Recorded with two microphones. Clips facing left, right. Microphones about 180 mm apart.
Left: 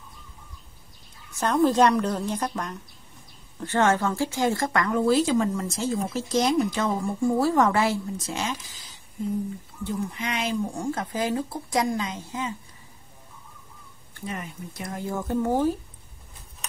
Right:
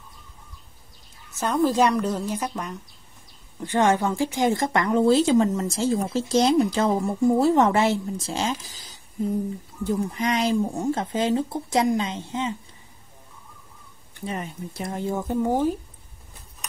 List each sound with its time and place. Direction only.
1.4 s a woman's voice: 5° right (ahead or behind); by 12.5 s 25° right (ahead or behind)
14.2 s a woman's voice: 30° right (ahead or behind)